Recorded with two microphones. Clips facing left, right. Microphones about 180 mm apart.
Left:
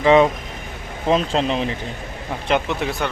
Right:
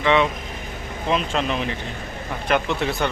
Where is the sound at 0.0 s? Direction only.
40° left (ahead or behind).